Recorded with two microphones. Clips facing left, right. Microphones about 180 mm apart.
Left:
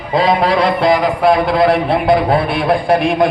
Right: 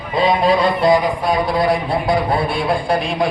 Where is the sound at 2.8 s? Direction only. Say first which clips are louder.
Left 6 dB; 60° left (ahead or behind).